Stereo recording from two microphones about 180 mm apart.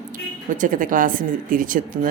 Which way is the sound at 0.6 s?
50° right (ahead or behind).